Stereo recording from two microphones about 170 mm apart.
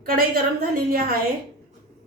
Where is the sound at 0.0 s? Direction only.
55° right (ahead or behind).